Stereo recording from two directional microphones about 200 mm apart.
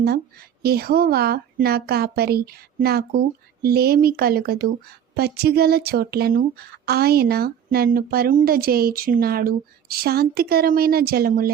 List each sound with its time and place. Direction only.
0.0 s speech: 50° right (ahead or behind)